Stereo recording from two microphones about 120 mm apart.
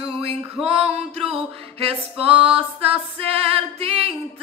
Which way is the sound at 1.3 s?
55° right (ahead or behind).